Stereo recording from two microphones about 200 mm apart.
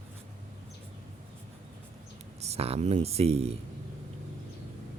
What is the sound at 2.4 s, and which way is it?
Speech, 30° right (ahead or behind).